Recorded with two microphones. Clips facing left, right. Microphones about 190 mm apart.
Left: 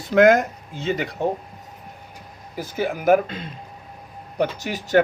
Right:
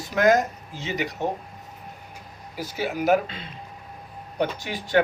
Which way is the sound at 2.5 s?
50° left (ahead or behind).